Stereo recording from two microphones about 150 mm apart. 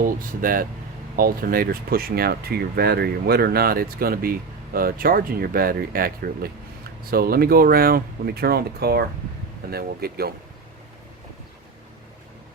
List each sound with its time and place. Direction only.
0.4 s speech: 70° right (ahead or behind); by 10.3 s 90° right